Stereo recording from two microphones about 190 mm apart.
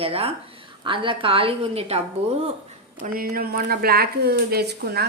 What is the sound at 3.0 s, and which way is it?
Speech, 50° right (ahead or behind).